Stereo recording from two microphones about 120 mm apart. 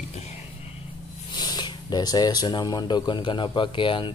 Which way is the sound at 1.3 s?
35° left (ahead or behind).